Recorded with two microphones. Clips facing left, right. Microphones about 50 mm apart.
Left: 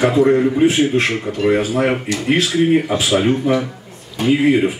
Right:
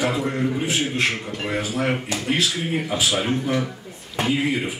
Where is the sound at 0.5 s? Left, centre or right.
Left.